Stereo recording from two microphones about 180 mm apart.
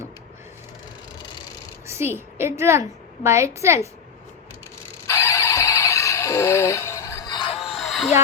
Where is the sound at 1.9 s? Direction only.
15° right (ahead or behind).